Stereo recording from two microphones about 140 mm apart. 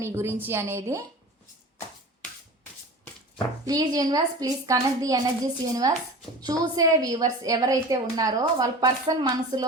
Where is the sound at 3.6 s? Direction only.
25° right (ahead or behind).